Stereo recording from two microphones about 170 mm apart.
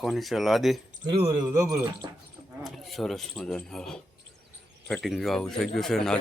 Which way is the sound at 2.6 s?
Centre (ahead or behind).